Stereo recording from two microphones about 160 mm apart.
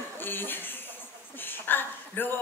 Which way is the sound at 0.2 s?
15° left (ahead or behind).